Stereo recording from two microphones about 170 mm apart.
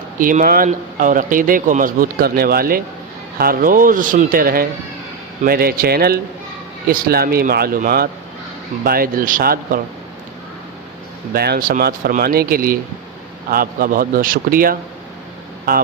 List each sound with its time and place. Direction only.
0.2 s speech: 55° right (ahead or behind)
11.3 s speech: 65° right (ahead or behind)